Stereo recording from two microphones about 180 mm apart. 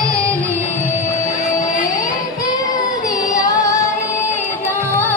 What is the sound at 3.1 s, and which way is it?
Music, 20° left (ahead or behind).